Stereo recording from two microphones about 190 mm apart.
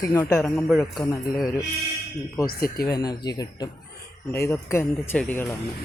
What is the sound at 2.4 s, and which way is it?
Speech, 50° left (ahead or behind).